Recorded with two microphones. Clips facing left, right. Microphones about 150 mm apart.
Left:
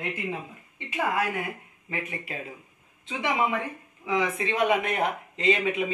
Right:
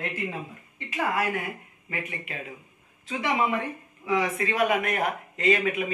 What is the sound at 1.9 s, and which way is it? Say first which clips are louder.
Speech: left 1 dB; 30° left (ahead or behind).